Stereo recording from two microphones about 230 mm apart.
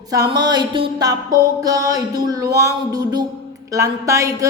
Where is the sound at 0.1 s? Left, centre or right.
Centre.